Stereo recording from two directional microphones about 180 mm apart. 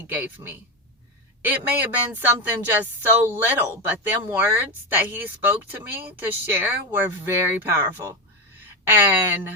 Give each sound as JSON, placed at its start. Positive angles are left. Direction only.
{"t": 0.1, "sound": "speech", "side_deg": -10}
{"t": 1.5, "sound": "speech", "side_deg": -10}